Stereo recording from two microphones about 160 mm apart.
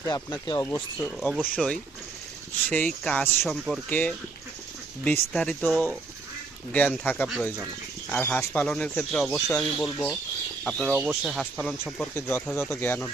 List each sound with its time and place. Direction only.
0.0 s speech: 20° left (ahead or behind)
1.3 s speech: 5° right (ahead or behind)
2.6 s speech: 10° left (ahead or behind)
3.8 s speech: 10° left (ahead or behind)
5.3 s speech: 5° left (ahead or behind)
12.1 s speech: 15° left (ahead or behind)